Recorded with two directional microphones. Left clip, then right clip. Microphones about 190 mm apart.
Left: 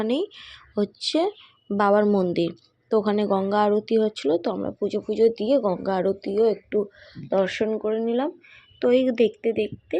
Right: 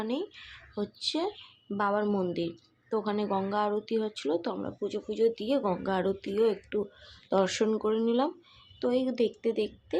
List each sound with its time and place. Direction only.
0.0 s a woman's voice: 40° left (ahead or behind); by 6.8 s 15° left (ahead or behind)
7.3 s speech: 5° left (ahead or behind)
8.8 s a woman's voice: 20° left (ahead or behind); by 10.0 s 5° left (ahead or behind)